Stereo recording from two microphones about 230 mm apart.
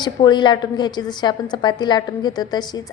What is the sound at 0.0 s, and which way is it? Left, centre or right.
A woman's voice, centre.